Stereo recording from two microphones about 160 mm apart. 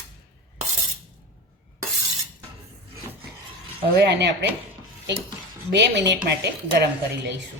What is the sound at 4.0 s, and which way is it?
Speech, 90° right.